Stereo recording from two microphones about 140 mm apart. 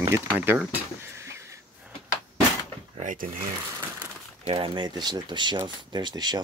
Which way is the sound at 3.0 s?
60° right (ahead or behind).